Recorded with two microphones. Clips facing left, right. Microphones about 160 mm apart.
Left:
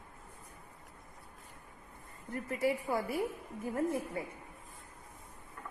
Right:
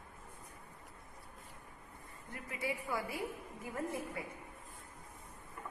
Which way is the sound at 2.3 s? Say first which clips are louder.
Left 8 dB; 40° left (ahead or behind).